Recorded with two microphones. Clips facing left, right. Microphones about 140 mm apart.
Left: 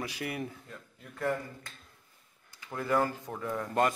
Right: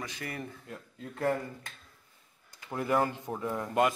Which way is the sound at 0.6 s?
25° right (ahead or behind).